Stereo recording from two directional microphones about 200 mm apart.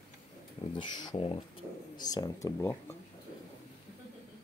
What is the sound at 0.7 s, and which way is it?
Speech, 20° left (ahead or behind).